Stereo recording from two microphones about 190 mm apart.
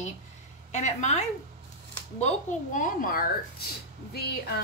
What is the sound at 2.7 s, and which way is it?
Speech, 50° left (ahead or behind).